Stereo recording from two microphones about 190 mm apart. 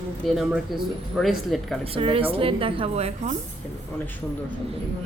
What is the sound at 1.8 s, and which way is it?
Speech, 30° right (ahead or behind).